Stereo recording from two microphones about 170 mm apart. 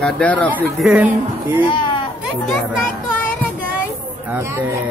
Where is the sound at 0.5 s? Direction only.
10° right (ahead or behind).